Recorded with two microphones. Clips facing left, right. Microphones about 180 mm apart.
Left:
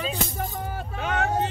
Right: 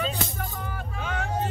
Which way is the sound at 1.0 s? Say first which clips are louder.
Left 6 dB; 70° left (ahead or behind).